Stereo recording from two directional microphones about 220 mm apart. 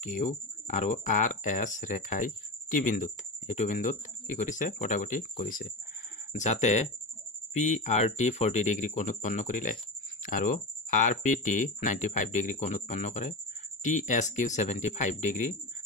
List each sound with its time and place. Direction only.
0.0 s speech: 35° left (ahead or behind)